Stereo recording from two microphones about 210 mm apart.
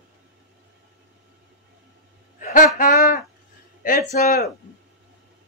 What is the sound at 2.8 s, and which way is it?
A man's voice, 45° left (ahead or behind).